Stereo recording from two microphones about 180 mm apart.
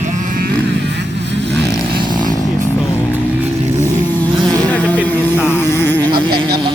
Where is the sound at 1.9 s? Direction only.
25° right (ahead or behind).